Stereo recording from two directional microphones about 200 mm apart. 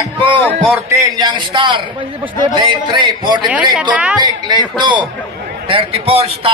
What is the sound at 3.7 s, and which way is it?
Speech, 5° right (ahead or behind).